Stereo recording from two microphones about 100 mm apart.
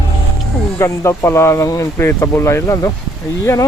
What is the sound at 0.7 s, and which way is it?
Speech, 30° left (ahead or behind).